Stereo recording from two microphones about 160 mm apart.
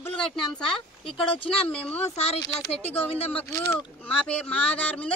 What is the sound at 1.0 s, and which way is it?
Speech, 35° left (ahead or behind).